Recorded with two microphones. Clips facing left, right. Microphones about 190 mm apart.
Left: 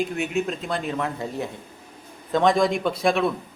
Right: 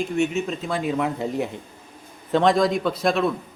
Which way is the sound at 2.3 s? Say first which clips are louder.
Right 1 dB; 5° left (ahead or behind).